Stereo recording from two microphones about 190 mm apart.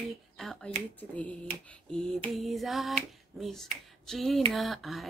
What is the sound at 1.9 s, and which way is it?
Finger snapping, 5° left (ahead or behind).